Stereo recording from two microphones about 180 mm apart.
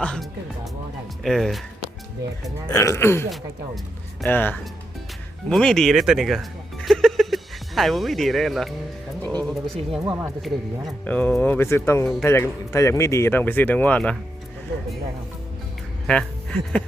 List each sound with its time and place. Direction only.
0.0 s speech: centre (ahead or behind)
2.6 s a man's voice: 15° left (ahead or behind); by 6.4 s centre (ahead or behind)
6.8 s music: centre (ahead or behind)
9.2 s speech: 5° left (ahead or behind)
10.1 s speech: 15° right (ahead or behind)
11.0 s a man's voice: 10° left (ahead or behind)
16.0 s speech: 5° left (ahead or behind)